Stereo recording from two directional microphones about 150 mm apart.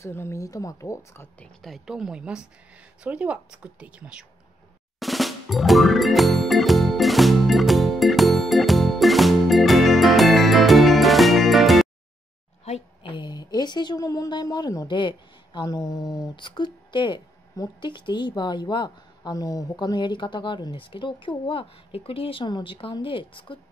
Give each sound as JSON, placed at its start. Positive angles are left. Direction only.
{"t": 0.0, "sound": "a woman's voice", "side_deg": 20}
{"t": 1.6, "sound": "speech", "side_deg": 0}
{"t": 4.9, "sound": "music", "side_deg": 0}
{"t": 12.7, "sound": "a sound", "side_deg": 50}
{"t": 13.0, "sound": "a woman's voice", "side_deg": 30}